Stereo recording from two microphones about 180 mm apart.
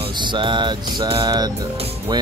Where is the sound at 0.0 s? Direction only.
25° right (ahead or behind).